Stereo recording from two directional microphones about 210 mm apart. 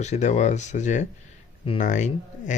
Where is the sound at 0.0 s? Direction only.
35° left (ahead or behind).